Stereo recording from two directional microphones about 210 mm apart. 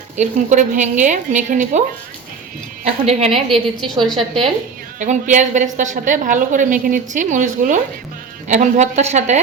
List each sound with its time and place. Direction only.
0.2 s a woman's voice: 35° right (ahead or behind)
2.8 s a woman's voice: 30° right (ahead or behind)
3.3 s a woman's voice: centre (ahead or behind)
4.9 s a woman's voice: 35° right (ahead or behind)